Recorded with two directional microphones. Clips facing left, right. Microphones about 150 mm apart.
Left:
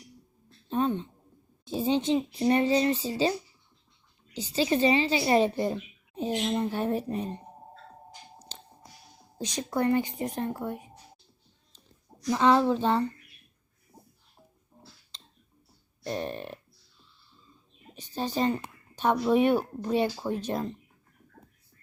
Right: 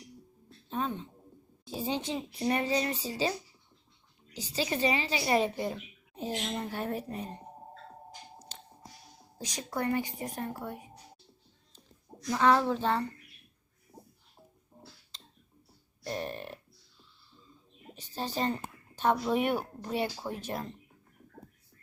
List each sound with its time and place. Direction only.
1.6 s speech: 25° left (ahead or behind)
4.4 s speech: 25° left (ahead or behind)
5.5 s a woman's voice: 40° left (ahead or behind)
6.1 s speech: 20° left (ahead or behind)
9.4 s speech: 25° left (ahead or behind)
12.3 s speech: 20° left (ahead or behind)
16.0 s speech: 25° left (ahead or behind)
17.9 s speech: 15° left (ahead or behind)